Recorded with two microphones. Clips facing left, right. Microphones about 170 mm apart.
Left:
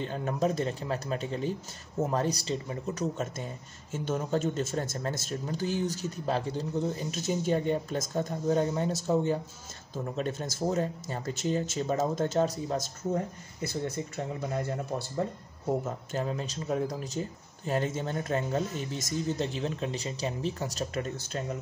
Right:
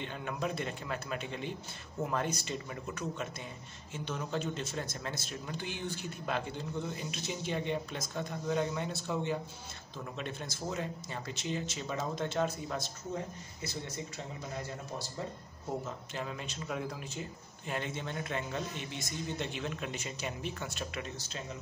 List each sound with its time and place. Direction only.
0.0 s a man's voice: 35° left (ahead or behind); by 14.2 s 55° left (ahead or behind)
15.8 s a man's voice: 45° left (ahead or behind)